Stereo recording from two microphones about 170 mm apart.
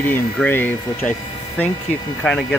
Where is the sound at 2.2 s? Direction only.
5° left (ahead or behind).